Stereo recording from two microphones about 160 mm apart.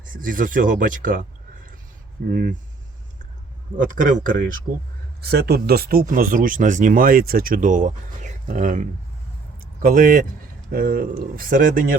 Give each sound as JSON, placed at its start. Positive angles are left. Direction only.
{"t": 0.1, "sound": "speech", "side_deg": -60}
{"t": 2.3, "sound": "speech", "side_deg": -65}
{"t": 3.8, "sound": "speech", "side_deg": -55}
{"t": 5.2, "sound": "speech", "side_deg": -85}